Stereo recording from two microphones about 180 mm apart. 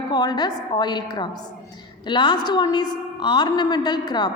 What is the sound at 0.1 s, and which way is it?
A woman's voice, 25° left (ahead or behind).